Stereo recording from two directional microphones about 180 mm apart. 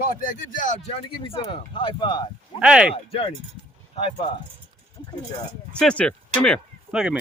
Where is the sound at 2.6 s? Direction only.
5° right (ahead or behind).